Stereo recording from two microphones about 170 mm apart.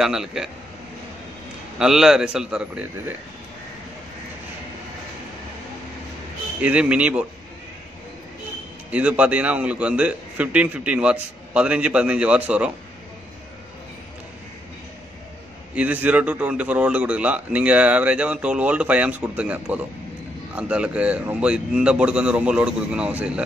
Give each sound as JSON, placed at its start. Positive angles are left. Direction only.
{"t": 0.0, "sound": "a man's voice", "side_deg": -5}
{"t": 1.8, "sound": "a man's voice", "side_deg": -5}
{"t": 6.6, "sound": "a man's voice", "side_deg": -10}
{"t": 8.9, "sound": "a man's voice", "side_deg": -10}
{"t": 15.7, "sound": "a man's voice", "side_deg": -10}